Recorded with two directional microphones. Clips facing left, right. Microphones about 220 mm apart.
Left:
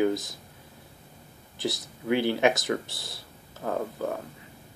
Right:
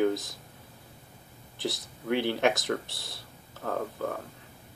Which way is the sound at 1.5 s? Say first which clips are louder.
Left 2 dB; centre (ahead or behind).